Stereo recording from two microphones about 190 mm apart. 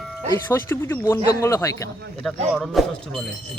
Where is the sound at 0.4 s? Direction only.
10° left (ahead or behind).